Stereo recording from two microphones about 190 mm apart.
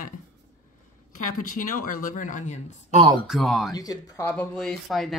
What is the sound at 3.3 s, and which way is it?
Speech, centre (ahead or behind).